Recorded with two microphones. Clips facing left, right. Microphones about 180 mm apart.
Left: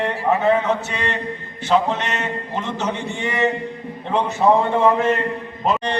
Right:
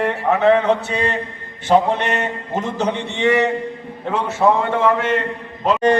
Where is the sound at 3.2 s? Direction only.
75° right (ahead or behind).